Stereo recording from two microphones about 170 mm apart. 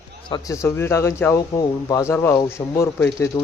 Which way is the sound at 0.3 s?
25° left (ahead or behind).